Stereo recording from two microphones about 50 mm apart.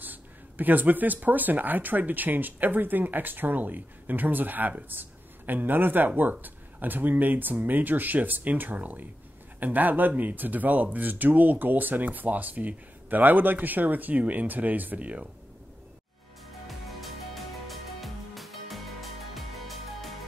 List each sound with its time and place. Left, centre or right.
0.0 s speech: right
16.6 s music: centre